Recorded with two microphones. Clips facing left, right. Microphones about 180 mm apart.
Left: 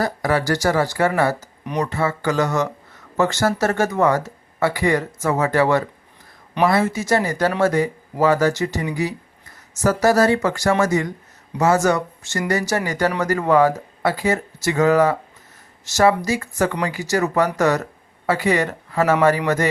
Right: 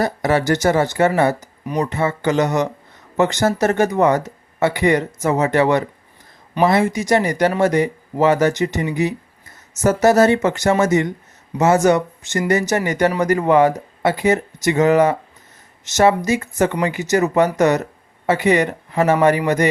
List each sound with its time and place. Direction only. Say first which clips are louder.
0.0 s speech: right 3 dB; 25° right (ahead or behind)